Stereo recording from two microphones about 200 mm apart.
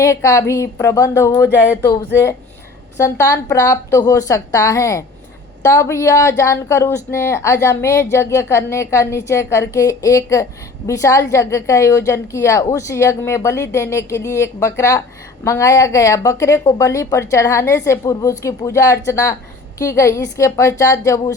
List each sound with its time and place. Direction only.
0.0 s a woman's voice: 15° left (ahead or behind)